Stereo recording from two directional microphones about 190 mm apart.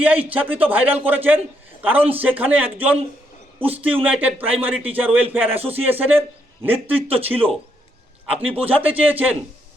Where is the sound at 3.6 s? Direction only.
30° right (ahead or behind).